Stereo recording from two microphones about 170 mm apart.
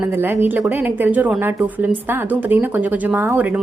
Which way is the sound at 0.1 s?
10° right (ahead or behind).